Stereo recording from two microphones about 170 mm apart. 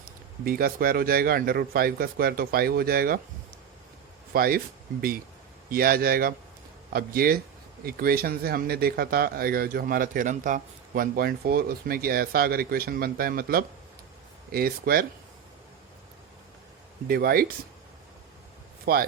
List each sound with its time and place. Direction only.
0.0 s speech: 60° right (ahead or behind)
4.3 s speech: 60° right (ahead or behind)
17.1 s speech: 60° right (ahead or behind)
18.9 s speech: 60° right (ahead or behind)